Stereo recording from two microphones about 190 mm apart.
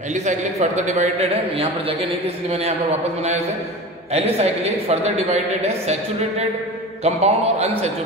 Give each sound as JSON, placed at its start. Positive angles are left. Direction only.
{"t": 0.1, "sound": "a man's voice", "side_deg": -40}
{"t": 4.1, "sound": "a man's voice", "side_deg": -35}
{"t": 7.0, "sound": "a man's voice", "side_deg": -35}